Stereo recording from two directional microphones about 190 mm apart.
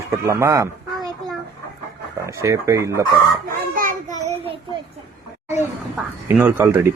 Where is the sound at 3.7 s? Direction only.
45° right (ahead or behind).